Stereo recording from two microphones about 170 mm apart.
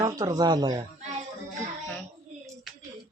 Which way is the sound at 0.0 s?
20° right (ahead or behind).